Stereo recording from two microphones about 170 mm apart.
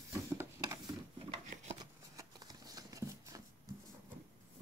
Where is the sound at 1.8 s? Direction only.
25° right (ahead or behind).